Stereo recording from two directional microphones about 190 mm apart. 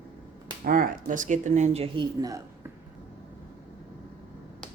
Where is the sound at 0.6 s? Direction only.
50° right (ahead or behind); by 2.0 s 30° right (ahead or behind).